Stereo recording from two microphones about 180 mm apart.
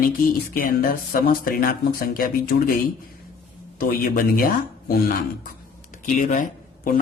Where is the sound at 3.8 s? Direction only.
55° left (ahead or behind).